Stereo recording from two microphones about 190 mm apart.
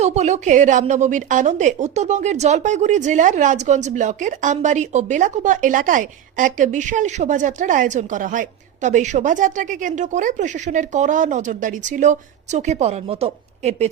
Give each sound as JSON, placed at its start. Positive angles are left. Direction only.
{"t": 0.0, "sound": "a woman's voice", "side_deg": -35}